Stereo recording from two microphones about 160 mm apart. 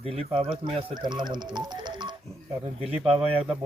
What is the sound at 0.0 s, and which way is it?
Speech, 40° right (ahead or behind).